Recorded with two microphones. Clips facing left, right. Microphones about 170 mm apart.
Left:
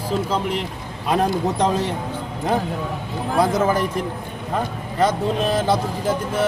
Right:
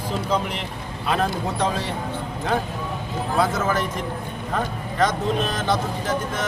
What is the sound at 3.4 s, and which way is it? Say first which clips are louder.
Speech: left 4 dB; 15° left (ahead or behind).